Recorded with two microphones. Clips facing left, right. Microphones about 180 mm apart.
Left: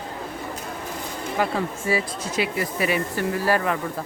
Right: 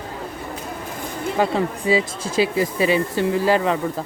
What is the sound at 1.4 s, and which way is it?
Speech, 20° right (ahead or behind).